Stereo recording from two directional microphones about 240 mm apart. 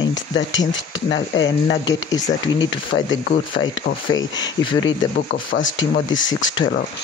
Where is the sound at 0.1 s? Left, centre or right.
Left.